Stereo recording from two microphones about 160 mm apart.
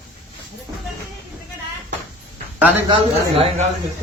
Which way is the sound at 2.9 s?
35° right (ahead or behind).